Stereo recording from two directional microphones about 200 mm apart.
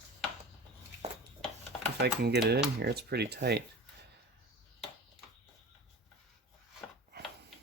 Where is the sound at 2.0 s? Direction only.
55° right (ahead or behind).